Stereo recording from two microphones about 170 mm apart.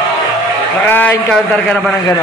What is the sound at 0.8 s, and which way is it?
A man's voice, 10° left (ahead or behind).